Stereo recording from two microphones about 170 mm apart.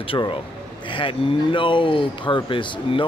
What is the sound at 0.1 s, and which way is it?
Speech, 25° left (ahead or behind).